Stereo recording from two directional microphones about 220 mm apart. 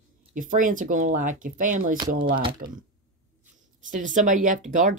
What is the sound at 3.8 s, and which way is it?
Speech, 35° right (ahead or behind).